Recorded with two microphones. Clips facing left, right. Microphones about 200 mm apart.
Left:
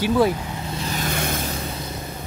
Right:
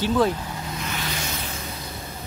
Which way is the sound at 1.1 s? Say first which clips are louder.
Left 6 dB; 55° left (ahead or behind).